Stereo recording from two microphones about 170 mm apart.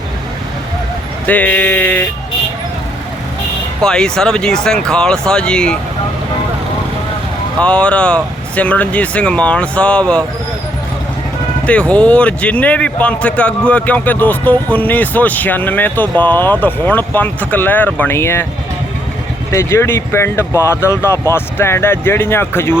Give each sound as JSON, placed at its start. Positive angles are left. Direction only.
{"t": 1.3, "sound": "speech", "side_deg": 10}
{"t": 3.8, "sound": "speech", "side_deg": 5}
{"t": 7.6, "sound": "speech", "side_deg": 5}
{"t": 11.6, "sound": "speech", "side_deg": 5}
{"t": 19.5, "sound": "speech", "side_deg": 15}